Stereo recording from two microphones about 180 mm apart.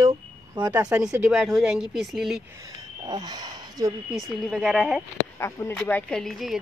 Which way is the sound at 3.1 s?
25° right (ahead or behind).